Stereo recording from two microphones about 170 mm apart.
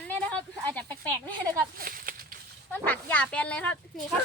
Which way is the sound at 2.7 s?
10° left (ahead or behind).